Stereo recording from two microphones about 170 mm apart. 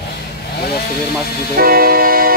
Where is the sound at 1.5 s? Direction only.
60° right (ahead or behind).